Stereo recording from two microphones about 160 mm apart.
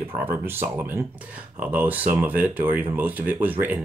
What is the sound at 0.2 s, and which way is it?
Speech, 15° right (ahead or behind).